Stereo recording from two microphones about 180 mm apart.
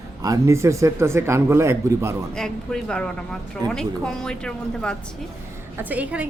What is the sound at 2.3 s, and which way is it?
Speech, 5° left (ahead or behind).